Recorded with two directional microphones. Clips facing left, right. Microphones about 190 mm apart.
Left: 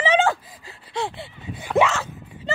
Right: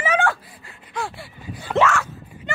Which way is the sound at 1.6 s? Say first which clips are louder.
Even; 10° left (ahead or behind).